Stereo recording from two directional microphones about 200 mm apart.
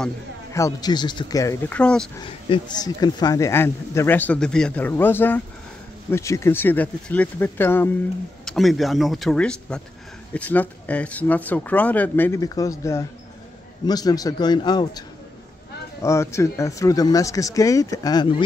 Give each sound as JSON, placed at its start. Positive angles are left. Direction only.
{"t": 0.5, "sound": "speech", "side_deg": 15}
{"t": 2.2, "sound": "speech", "side_deg": 20}
{"t": 8.5, "sound": "a man's voice", "side_deg": 0}